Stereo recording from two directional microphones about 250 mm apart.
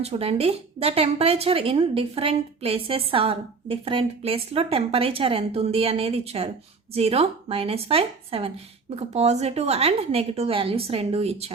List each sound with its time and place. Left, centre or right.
0.0 s a woman's voice: right